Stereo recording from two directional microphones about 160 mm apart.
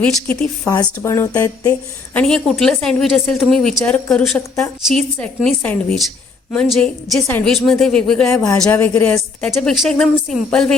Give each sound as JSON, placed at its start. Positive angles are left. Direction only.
{"t": 0.0, "sound": "a woman's voice", "side_deg": 5}
{"t": 0.6, "sound": "speech", "side_deg": 20}
{"t": 2.1, "sound": "a woman's voice", "side_deg": 5}
{"t": 7.3, "sound": "a woman's voice", "side_deg": 15}
{"t": 7.5, "sound": "a woman's voice", "side_deg": 5}